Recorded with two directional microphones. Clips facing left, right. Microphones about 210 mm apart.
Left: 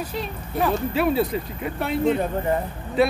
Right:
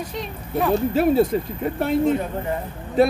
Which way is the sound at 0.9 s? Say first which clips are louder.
Right 4 dB; 45° right (ahead or behind).